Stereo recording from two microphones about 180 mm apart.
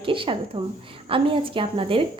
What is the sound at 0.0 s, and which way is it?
A woman's voice, 30° right (ahead or behind).